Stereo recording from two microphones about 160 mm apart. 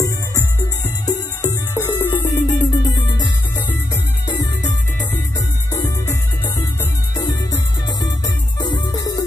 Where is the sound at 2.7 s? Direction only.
25° left (ahead or behind).